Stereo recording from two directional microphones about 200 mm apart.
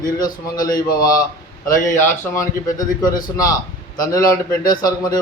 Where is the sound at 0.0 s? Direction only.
20° left (ahead or behind).